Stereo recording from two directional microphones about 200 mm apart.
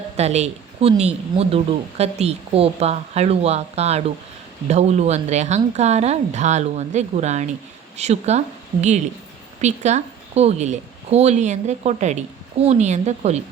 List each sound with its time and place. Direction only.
0.2 s speech: 35° right (ahead or behind)
9.6 s speech: 35° right (ahead or behind)